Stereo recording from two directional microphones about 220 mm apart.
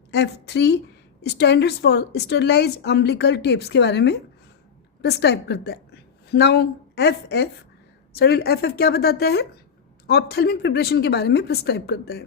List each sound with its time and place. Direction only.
0.1 s a woman's voice: 50° left (ahead or behind)